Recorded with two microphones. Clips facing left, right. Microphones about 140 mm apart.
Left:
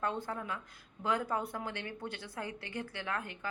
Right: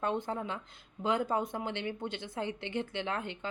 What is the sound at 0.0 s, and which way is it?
A woman's voice, 20° right (ahead or behind).